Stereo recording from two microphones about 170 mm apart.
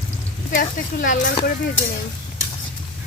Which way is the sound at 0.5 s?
50° left (ahead or behind).